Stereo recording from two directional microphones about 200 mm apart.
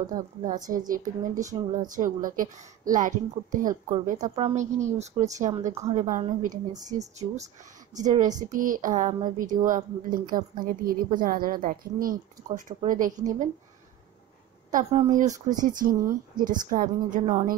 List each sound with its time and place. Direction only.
0.0 s a woman's voice: 40° right (ahead or behind)
4.2 s a woman's voice: 30° right (ahead or behind)
6.5 s a woman's voice: 20° right (ahead or behind)
6.9 s a woman's voice: 35° right (ahead or behind)
14.7 s a woman's voice: 35° right (ahead or behind)